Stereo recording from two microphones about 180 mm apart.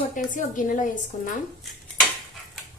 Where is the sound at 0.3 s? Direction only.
45° left (ahead or behind).